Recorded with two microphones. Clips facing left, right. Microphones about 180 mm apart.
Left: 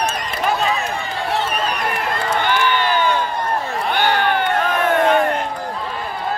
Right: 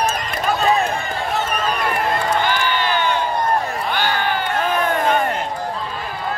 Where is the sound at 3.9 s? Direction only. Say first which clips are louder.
Left 4 dB; 60° left (ahead or behind).